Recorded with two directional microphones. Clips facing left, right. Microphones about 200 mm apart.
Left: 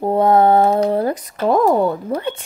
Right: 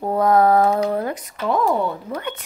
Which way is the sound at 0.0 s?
25° left (ahead or behind).